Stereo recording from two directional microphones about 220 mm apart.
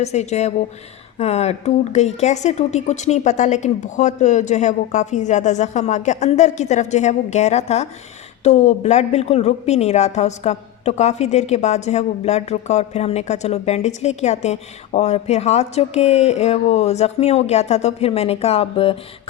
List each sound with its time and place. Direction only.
0.0 s a woman's voice: 30° left (ahead or behind)